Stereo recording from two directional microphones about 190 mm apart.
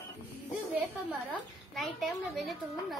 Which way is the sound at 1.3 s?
Centre (ahead or behind).